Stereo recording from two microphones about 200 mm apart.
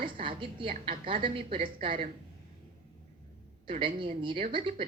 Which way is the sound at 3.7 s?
25° right (ahead or behind).